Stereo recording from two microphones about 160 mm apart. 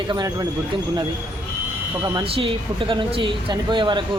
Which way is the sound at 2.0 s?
30° right (ahead or behind).